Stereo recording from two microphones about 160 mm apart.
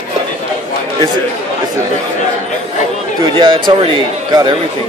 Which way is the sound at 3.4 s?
30° right (ahead or behind).